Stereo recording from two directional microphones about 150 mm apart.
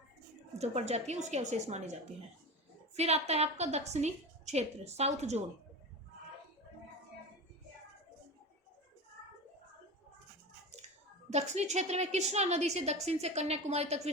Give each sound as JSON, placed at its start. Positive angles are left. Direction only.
{"t": 0.6, "sound": "a woman's voice", "side_deg": -45}
{"t": 11.3, "sound": "a woman's voice", "side_deg": -50}